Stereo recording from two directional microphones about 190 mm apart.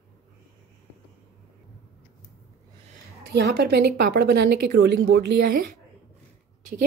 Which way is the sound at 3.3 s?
60° right (ahead or behind).